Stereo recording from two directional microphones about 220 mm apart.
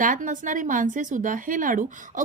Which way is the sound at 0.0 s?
35° right (ahead or behind).